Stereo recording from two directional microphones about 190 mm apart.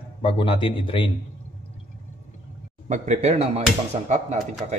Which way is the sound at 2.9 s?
35° right (ahead or behind).